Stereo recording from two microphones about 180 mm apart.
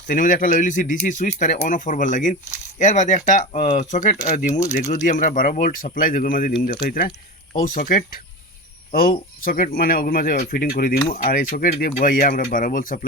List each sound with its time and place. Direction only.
0.1 s speech: 50° left (ahead or behind)